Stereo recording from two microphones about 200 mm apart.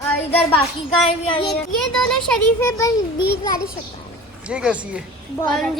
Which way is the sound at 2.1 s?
10° left (ahead or behind).